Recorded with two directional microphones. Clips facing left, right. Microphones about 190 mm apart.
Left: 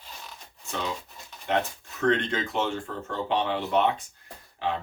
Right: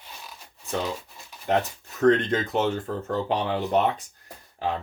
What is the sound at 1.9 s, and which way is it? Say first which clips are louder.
Speech: right 5 dB; 40° right (ahead or behind).